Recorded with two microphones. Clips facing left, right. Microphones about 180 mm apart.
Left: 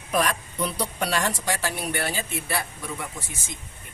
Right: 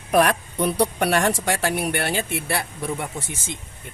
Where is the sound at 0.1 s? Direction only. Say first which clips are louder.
Right 6 dB; 65° right (ahead or behind).